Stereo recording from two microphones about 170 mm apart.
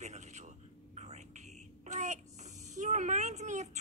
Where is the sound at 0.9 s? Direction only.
40° right (ahead or behind).